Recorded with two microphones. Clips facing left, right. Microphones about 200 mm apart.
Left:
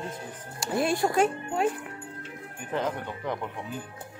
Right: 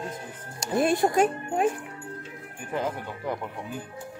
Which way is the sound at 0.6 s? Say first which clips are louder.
Right 3 dB; 20° right (ahead or behind).